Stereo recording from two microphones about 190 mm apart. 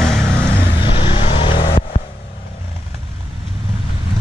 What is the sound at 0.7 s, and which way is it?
Vehicle, 25° left (ahead or behind).